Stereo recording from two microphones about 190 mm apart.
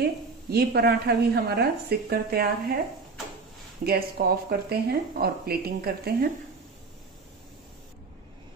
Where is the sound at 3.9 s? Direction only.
55° right (ahead or behind).